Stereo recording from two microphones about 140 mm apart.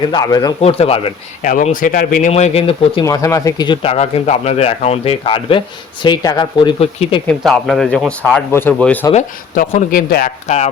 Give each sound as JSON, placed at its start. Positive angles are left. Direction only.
{"t": 0.1, "sound": "speech", "side_deg": 30}
{"t": 0.6, "sound": "speech", "side_deg": 45}
{"t": 1.4, "sound": "speech", "side_deg": 65}
{"t": 2.3, "sound": "speech", "side_deg": 50}
{"t": 3.0, "sound": "speech", "side_deg": 25}
{"t": 3.9, "sound": "speech", "side_deg": 50}
{"t": 7.3, "sound": "speech", "side_deg": 5}
{"t": 9.6, "sound": "speech", "side_deg": 90}
{"t": 10.4, "sound": "speech", "side_deg": 55}